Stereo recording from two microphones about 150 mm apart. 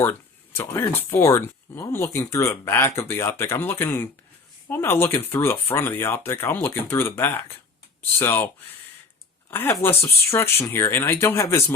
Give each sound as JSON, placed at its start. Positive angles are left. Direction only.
{"t": 0.0, "sound": "speech", "side_deg": 15}
{"t": 9.5, "sound": "speech", "side_deg": 15}